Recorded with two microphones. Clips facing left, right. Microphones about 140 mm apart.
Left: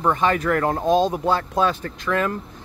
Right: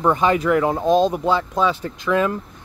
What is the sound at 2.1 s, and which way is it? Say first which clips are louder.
Speech: right 4 dB; 10° right (ahead or behind).